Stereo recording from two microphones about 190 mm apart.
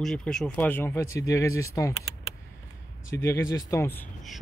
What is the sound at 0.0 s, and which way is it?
Speech, 5° left (ahead or behind).